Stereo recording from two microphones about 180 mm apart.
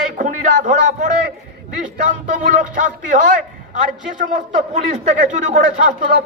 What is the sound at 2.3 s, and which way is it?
Speech, 45° right (ahead or behind).